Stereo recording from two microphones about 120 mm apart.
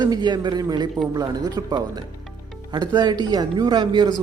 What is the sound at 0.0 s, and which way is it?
Speech, 35° right (ahead or behind).